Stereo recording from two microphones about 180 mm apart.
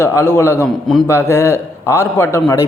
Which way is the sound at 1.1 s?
15° left (ahead or behind).